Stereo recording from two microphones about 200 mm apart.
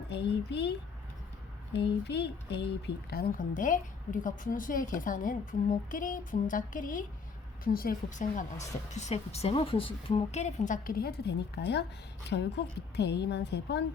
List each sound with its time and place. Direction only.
0.1 s a woman's voice: 55° left (ahead or behind)
1.9 s a woman's voice: 55° left (ahead or behind)